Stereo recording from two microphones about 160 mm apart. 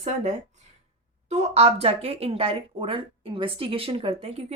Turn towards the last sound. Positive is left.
turn(degrees=-40)  # may be behind; listen again after turning